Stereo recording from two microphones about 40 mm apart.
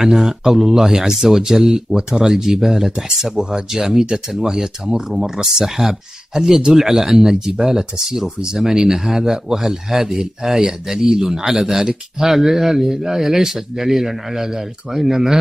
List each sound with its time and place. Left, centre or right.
0.0 s speech: centre